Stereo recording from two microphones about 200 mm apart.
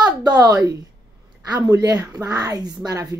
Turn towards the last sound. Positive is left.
turn(degrees=-20)  # may be behind; listen again after turning